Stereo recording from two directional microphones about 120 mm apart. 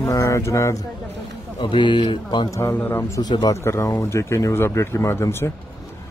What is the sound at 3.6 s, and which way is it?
Speech, 25° left (ahead or behind).